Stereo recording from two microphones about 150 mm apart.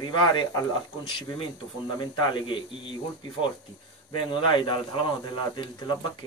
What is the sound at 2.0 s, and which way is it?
Speech, 30° left (ahead or behind).